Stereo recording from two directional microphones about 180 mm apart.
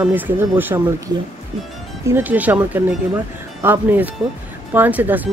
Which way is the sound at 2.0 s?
10° right (ahead or behind).